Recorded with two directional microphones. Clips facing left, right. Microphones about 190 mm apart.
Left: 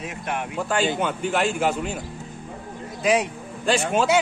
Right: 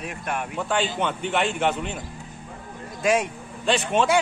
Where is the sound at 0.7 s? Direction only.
5° left (ahead or behind).